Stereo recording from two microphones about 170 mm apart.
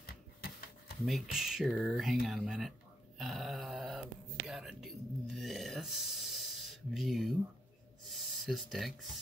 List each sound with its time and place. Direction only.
0.0 s shuffling cards: 65° left (ahead or behind)
1.0 s speech: centre (ahead or behind)
3.2 s a sound: centre (ahead or behind)
4.5 s speech: centre (ahead or behind)